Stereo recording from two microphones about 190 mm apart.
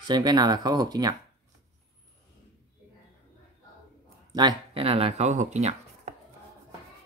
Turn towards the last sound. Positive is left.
turn(degrees=-35)  # may be behind; listen again after turning